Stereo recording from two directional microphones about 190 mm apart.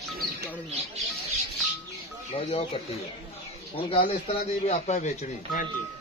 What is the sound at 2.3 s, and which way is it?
A man's voice, 30° left (ahead or behind).